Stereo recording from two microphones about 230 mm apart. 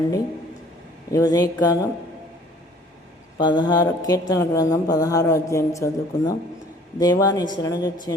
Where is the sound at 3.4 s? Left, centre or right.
Centre.